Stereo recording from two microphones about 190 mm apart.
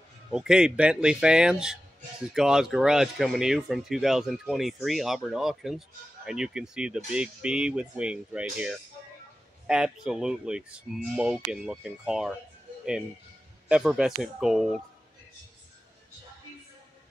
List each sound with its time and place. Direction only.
0.3 s speech: 5° right (ahead or behind)
13.7 s speech: 5° right (ahead or behind)